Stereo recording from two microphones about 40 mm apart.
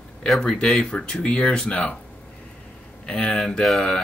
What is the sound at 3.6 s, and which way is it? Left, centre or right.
Speech, centre.